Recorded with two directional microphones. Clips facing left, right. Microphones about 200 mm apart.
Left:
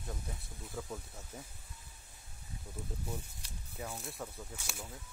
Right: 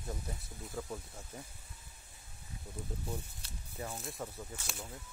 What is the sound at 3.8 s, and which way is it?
Speech, centre (ahead or behind).